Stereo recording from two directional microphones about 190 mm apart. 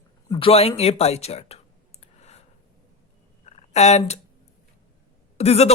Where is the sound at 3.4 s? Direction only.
35° left (ahead or behind).